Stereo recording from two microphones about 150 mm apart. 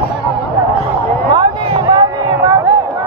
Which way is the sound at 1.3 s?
25° right (ahead or behind).